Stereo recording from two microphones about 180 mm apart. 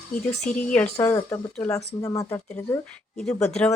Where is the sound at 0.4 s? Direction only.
10° left (ahead or behind).